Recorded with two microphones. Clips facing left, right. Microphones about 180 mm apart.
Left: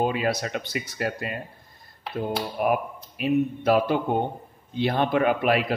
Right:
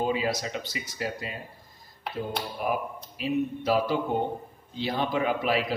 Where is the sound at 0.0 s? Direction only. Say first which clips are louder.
Left 3 dB; 60° left (ahead or behind).